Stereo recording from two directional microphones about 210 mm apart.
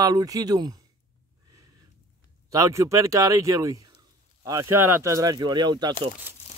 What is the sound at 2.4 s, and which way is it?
Speech, 15° right (ahead or behind).